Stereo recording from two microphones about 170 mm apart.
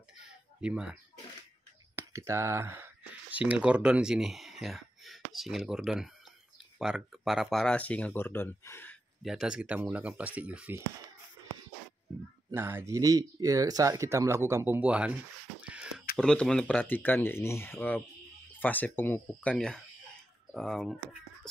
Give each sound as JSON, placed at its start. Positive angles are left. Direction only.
{"t": 0.2, "sound": "a sound", "side_deg": -5}
{"t": 2.0, "sound": "speech", "side_deg": -15}
{"t": 9.2, "sound": "speech", "side_deg": -5}
{"t": 12.4, "sound": "speech", "side_deg": -15}
{"t": 15.6, "sound": "a sound", "side_deg": -5}
{"t": 16.2, "sound": "speech", "side_deg": 5}